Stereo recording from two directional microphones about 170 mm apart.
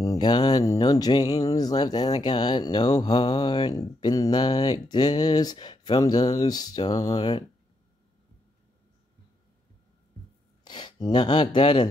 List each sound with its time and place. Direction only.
0.0 s speech: 20° left (ahead or behind)
10.6 s speech: 25° left (ahead or behind)